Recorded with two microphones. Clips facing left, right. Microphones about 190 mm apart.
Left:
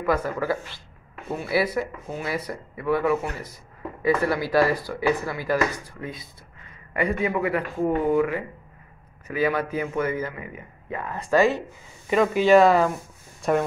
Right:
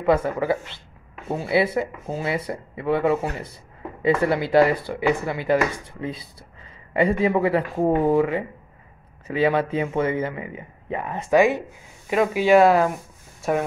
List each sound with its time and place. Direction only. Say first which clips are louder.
0.0 s speech: right 4 dB; 25° right (ahead or behind); by 13.7 s 5° right (ahead or behind)